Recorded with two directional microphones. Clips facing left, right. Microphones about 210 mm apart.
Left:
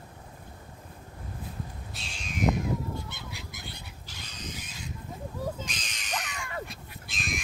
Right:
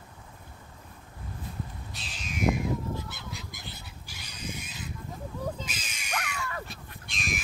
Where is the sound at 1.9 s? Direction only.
Centre (ahead or behind).